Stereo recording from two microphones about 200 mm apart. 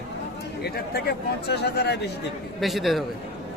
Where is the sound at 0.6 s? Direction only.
50° left (ahead or behind).